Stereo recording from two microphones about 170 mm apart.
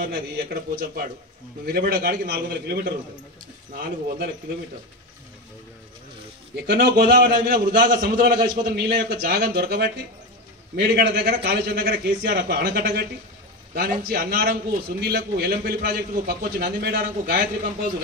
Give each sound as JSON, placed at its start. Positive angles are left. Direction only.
{"t": 0.0, "sound": "a man's voice", "side_deg": -60}
{"t": 6.5, "sound": "a man's voice", "side_deg": -65}